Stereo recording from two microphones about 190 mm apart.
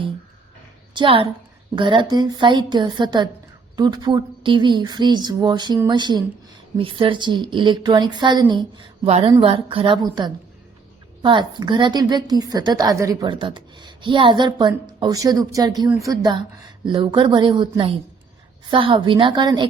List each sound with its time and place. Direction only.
0.9 s a woman's voice: 25° right (ahead or behind)